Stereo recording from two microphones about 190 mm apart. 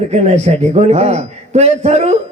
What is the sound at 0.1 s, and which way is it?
Speech, 35° right (ahead or behind).